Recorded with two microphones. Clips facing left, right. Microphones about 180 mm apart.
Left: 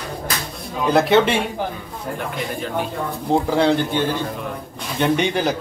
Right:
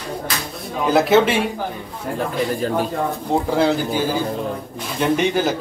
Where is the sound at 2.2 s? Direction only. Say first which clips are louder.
Right 7 dB; 35° right (ahead or behind).